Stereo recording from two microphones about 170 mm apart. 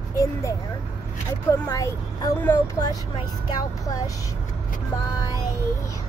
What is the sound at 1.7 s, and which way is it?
Speech, 20° left (ahead or behind).